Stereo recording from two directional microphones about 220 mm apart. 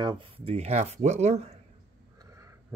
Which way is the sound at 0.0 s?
25° right (ahead or behind).